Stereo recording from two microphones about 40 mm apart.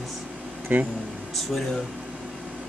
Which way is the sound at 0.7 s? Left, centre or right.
Right.